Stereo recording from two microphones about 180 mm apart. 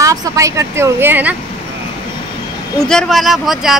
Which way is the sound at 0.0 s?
20° right (ahead or behind).